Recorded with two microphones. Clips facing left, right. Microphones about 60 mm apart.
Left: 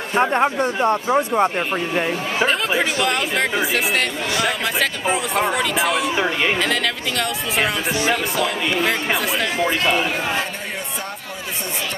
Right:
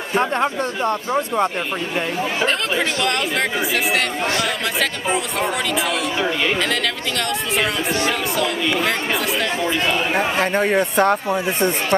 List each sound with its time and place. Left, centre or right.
0.1 s speech: centre
6.1 s speech: centre
6.6 s speech: centre
7.9 s speech: centre
8.8 s speech: centre
9.7 s a man's voice: centre
10.6 s speech: right